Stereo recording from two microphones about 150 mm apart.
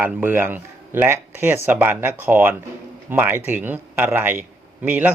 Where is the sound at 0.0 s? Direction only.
15° right (ahead or behind).